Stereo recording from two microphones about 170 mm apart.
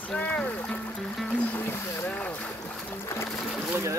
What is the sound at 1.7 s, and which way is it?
Boat, 10° left (ahead or behind).